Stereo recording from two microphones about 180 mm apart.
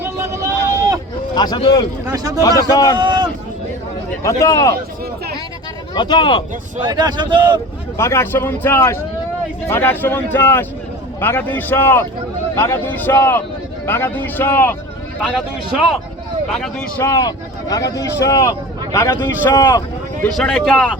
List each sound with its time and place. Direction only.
0.0 s a sound: 15° right (ahead or behind)
1.4 s speech: 25° left (ahead or behind)
2.1 s speech: 20° right (ahead or behind)
2.4 s speech: 20° left (ahead or behind)
3.0 s a sound: 25° right (ahead or behind)
4.2 s speech: 15° left (ahead or behind)
5.9 s speech: 25° left (ahead or behind)
6.8 s speech: 25° right (ahead or behind)
7.9 s speech: 15° left (ahead or behind)
17.0 s speech: 20° left (ahead or behind)
20.2 s speech: 5° left (ahead or behind)